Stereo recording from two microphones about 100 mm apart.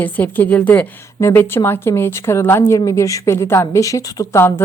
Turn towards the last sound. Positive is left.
turn(degrees=25)  # may be behind; listen again after turning